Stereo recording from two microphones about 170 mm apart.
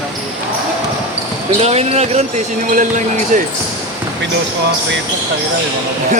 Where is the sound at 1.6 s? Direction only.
40° right (ahead or behind).